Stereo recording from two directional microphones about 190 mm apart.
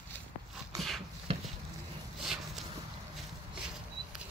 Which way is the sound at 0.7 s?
Centre (ahead or behind).